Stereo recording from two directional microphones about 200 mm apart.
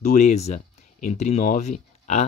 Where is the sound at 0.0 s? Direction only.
35° left (ahead or behind).